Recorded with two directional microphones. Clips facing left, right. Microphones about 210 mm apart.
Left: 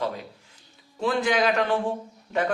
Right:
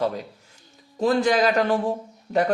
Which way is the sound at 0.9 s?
40° right (ahead or behind).